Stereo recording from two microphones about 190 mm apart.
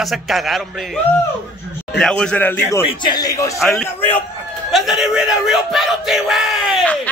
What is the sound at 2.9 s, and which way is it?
Speech, 20° left (ahead or behind).